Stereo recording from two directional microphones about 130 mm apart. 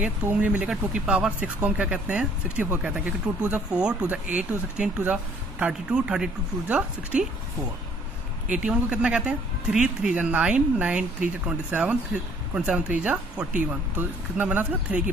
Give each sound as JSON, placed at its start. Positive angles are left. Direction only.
{"t": 0.0, "sound": "speech", "side_deg": -10}
{"t": 8.5, "sound": "speech", "side_deg": -10}